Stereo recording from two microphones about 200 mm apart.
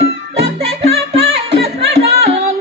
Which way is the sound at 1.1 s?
30° right (ahead or behind).